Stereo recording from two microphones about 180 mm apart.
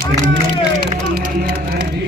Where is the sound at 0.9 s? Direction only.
50° right (ahead or behind).